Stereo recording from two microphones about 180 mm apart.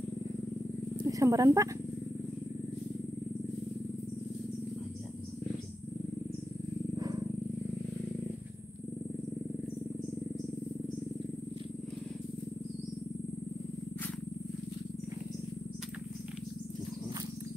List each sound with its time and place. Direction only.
0.9 s speech: 20° right (ahead or behind)